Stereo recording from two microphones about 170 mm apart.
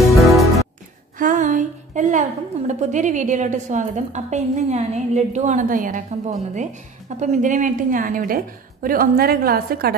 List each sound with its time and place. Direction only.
0.1 s music: centre (ahead or behind)
1.1 s a woman's voice: 50° right (ahead or behind)